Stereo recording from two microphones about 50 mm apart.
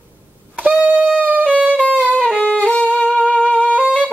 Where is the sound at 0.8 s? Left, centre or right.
Right.